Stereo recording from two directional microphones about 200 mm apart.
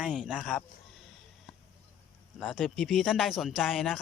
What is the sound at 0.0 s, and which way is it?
Speech, centre (ahead or behind).